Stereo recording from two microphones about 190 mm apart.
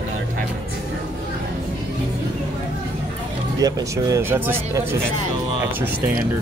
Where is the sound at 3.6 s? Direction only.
15° right (ahead or behind).